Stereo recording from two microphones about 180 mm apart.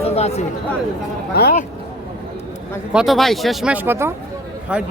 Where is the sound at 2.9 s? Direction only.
Centre (ahead or behind).